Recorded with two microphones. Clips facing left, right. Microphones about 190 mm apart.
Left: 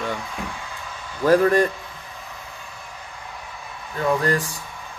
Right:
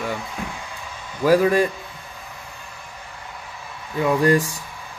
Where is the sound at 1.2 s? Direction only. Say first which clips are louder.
Even; 5° right (ahead or behind).